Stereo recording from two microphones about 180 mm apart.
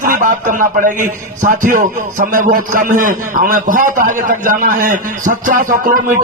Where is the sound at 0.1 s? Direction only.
50° right (ahead or behind).